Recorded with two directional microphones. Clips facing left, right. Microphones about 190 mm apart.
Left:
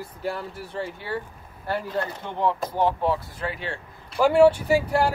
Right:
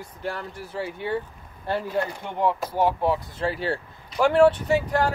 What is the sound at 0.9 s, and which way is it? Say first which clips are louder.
Speech: right 3 dB; 20° right (ahead or behind).